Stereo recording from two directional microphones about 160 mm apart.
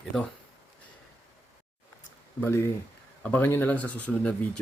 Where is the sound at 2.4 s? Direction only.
15° left (ahead or behind).